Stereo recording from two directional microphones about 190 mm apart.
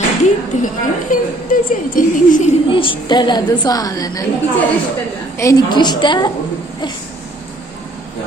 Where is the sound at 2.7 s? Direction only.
25° left (ahead or behind).